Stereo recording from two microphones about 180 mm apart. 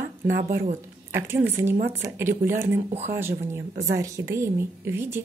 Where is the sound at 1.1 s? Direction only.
15° right (ahead or behind).